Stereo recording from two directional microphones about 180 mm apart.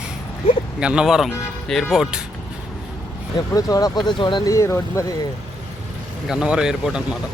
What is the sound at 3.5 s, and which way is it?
Speech, 20° left (ahead or behind).